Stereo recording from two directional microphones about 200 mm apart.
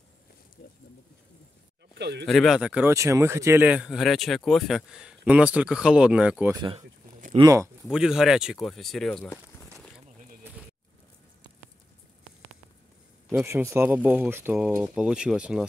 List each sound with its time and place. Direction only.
0.6 s speech: 50° left (ahead or behind)
2.0 s speech: 60° right (ahead or behind)
2.2 s speech: centre (ahead or behind)
6.5 s speech: 20° right (ahead or behind)
7.9 s speech: 5° right (ahead or behind)
13.5 s speech: 10° right (ahead or behind)